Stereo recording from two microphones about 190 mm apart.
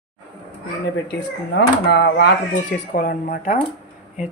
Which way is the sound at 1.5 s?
60° left (ahead or behind).